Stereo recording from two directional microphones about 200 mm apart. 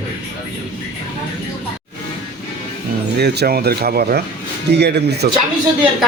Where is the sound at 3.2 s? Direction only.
50° right (ahead or behind).